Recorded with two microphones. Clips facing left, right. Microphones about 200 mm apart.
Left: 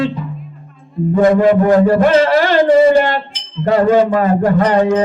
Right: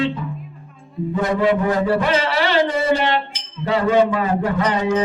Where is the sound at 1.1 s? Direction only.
45° left (ahead or behind).